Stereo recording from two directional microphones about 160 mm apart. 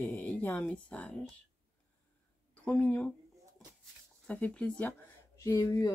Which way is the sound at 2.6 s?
5° left (ahead or behind).